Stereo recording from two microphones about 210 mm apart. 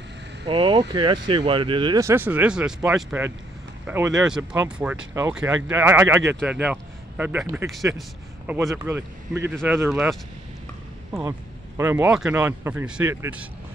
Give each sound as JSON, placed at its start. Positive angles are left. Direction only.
{"t": 0.5, "sound": "speech", "side_deg": -25}
{"t": 8.7, "sound": "speech", "side_deg": -10}